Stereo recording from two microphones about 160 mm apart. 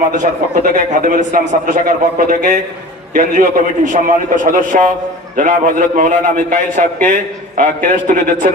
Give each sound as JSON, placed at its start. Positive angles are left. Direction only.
{"t": 0.2, "sound": "speech", "side_deg": -60}